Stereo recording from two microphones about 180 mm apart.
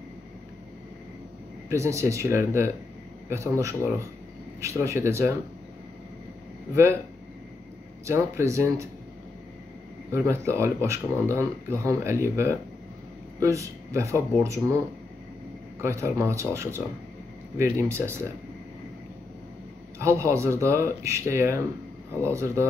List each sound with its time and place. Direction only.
1.7 s speech: 15° right (ahead or behind)
6.7 s speech: 15° right (ahead or behind)
8.1 s speech: 15° right (ahead or behind)
10.1 s speech: 15° right (ahead or behind)
15.8 s speech: 15° right (ahead or behind)
20.0 s speech: 15° right (ahead or behind)